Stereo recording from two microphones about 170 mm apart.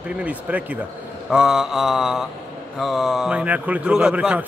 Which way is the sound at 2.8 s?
Centre (ahead or behind).